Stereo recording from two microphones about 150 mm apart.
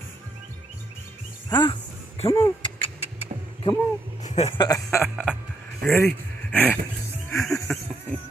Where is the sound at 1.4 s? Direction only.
30° left (ahead or behind).